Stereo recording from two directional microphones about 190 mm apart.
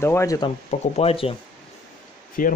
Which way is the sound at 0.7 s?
35° left (ahead or behind).